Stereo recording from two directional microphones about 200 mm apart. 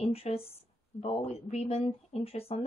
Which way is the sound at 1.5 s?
30° left (ahead or behind).